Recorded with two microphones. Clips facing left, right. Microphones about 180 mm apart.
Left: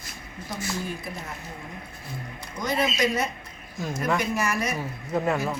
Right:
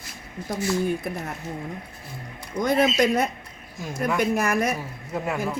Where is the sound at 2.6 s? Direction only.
55° right (ahead or behind).